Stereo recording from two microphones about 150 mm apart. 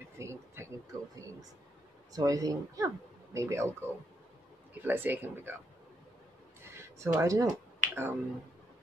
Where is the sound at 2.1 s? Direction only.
25° right (ahead or behind).